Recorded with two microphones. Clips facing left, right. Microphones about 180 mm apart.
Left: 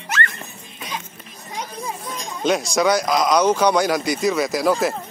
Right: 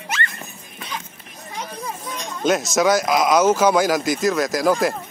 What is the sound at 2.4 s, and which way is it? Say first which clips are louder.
Speech: right 1 dB; centre (ahead or behind).